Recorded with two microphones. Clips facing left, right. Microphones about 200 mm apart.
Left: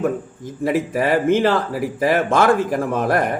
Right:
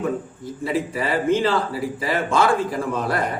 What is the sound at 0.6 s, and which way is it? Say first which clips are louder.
A man's voice: left 5 dB; 50° left (ahead or behind).